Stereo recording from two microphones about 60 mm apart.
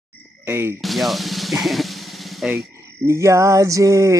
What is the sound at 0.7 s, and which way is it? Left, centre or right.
Speech, centre.